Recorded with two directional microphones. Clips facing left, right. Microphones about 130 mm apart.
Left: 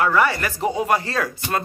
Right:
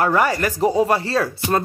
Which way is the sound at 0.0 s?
40° right (ahead or behind).